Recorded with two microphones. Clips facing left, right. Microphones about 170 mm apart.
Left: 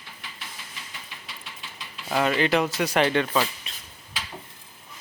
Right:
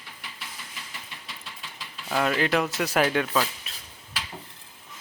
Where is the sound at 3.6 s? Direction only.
Centre (ahead or behind).